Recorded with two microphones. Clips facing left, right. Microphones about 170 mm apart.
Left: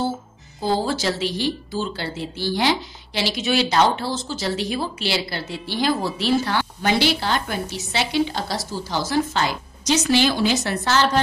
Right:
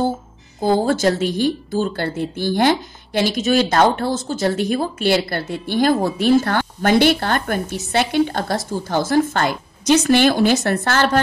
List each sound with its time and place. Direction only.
0.7 s speech: 55° right (ahead or behind)